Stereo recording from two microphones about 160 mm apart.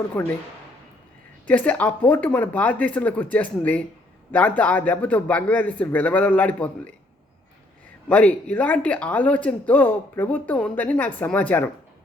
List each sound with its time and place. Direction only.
0.1 s speech: 10° left (ahead or behind)
1.5 s speech: 10° left (ahead or behind)
8.0 s speech: 10° left (ahead or behind)